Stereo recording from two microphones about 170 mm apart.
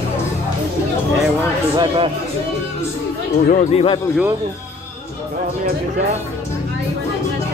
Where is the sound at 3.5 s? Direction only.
35° left (ahead or behind).